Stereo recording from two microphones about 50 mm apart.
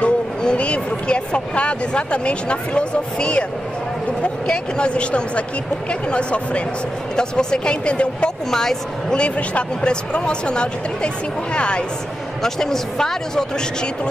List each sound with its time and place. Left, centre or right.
0.0 s speech: left
8.5 s speech: centre
9.2 s speech: left
12.4 s speech: centre